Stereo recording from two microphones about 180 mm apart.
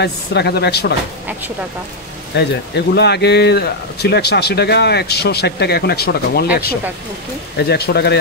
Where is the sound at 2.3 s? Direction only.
70° left (ahead or behind).